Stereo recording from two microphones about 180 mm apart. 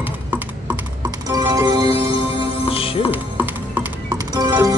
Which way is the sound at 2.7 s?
30° left (ahead or behind).